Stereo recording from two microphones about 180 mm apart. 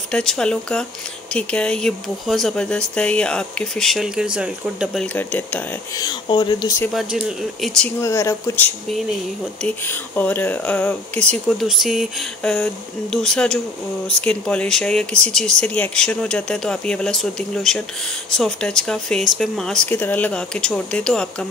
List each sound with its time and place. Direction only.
0.1 s speech: 5° left (ahead or behind)
5.0 s speech: 10° left (ahead or behind)
5.9 s speech: 25° left (ahead or behind)
6.9 s speech: 5° right (ahead or behind)
8.0 s speech: 15° left (ahead or behind)